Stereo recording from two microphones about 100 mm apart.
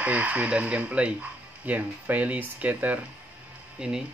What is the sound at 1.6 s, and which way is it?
Speech, 15° right (ahead or behind).